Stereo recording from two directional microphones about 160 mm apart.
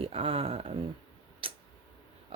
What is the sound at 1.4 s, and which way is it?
Tick-tock, 35° right (ahead or behind).